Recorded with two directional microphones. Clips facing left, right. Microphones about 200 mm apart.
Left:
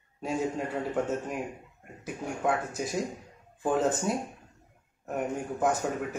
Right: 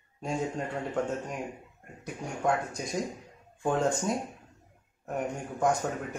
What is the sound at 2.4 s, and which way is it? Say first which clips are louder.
Speech: even; 5° left (ahead or behind).